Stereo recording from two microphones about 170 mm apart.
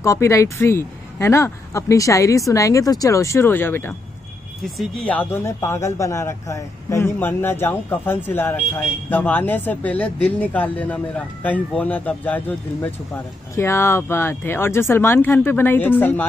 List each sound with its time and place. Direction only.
0.0 s speech: 15° left (ahead or behind)